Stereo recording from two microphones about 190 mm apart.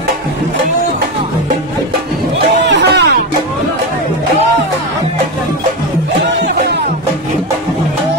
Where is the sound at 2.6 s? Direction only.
65° right (ahead or behind).